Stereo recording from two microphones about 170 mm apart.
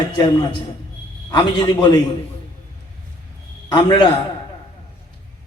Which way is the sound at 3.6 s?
25° left (ahead or behind).